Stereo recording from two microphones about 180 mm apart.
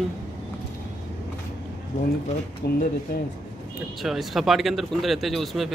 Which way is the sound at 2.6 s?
65° left (ahead or behind).